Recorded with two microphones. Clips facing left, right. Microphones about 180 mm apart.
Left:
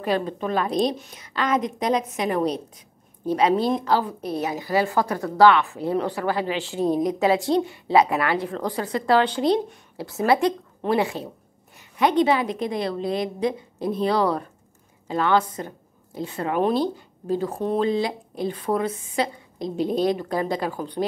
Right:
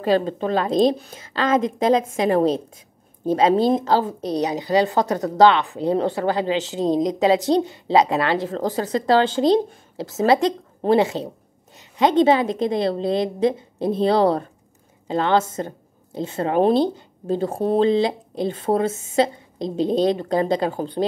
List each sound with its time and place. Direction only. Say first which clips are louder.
0.0 s a woman's voice: right 5 dB; 30° right (ahead or behind)